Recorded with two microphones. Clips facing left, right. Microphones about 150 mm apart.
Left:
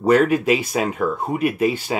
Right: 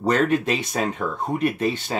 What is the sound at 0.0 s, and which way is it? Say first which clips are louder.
Speech: left 4 dB; 10° left (ahead or behind).